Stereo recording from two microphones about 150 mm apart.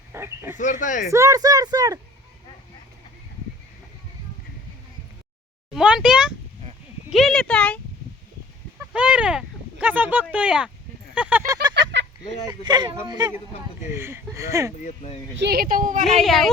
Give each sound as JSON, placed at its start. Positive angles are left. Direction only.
{"t": 0.1, "sound": "speech", "side_deg": -15}
{"t": 0.5, "sound": "speech", "side_deg": 55}
{"t": 1.1, "sound": "speech", "side_deg": -20}
{"t": 5.7, "sound": "speech", "side_deg": -5}
{"t": 8.9, "sound": "speech", "side_deg": -10}
{"t": 11.4, "sound": "speech", "side_deg": -25}
{"t": 13.9, "sound": "speech", "side_deg": -15}
{"t": 14.8, "sound": "speech", "side_deg": 45}
{"t": 15.4, "sound": "speech", "side_deg": -80}
{"t": 16.0, "sound": "speech", "side_deg": 0}